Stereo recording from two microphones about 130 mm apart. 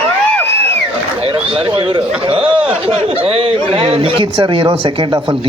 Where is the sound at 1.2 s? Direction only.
45° right (ahead or behind).